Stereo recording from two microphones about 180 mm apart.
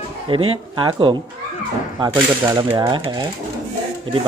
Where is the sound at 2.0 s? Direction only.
25° right (ahead or behind).